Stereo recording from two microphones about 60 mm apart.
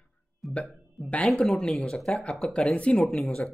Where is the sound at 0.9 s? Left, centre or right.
Left.